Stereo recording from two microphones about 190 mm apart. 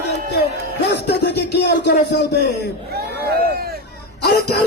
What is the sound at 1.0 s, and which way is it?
Speech, 60° left (ahead or behind).